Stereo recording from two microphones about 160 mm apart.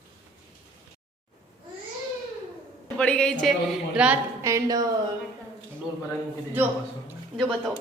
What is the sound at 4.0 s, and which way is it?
Speech, 5° right (ahead or behind).